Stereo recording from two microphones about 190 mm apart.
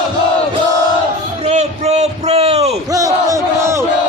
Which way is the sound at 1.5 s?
35° right (ahead or behind).